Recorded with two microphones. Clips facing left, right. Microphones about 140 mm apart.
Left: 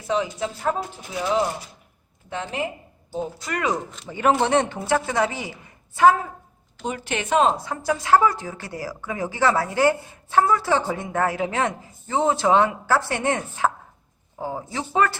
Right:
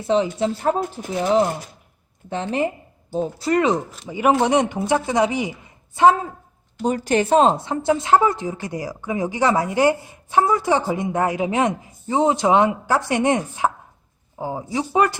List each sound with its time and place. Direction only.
0.3 s speech: 30° right (ahead or behind)
0.8 s speech: 45° right (ahead or behind)
2.3 s speech: 30° right (ahead or behind)
3.9 s speech: 10° right (ahead or behind)
6.8 s speech: 40° right (ahead or behind); by 15.2 s 15° right (ahead or behind)